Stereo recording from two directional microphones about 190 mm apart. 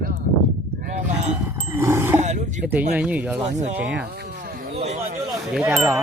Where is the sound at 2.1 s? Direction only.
35° right (ahead or behind).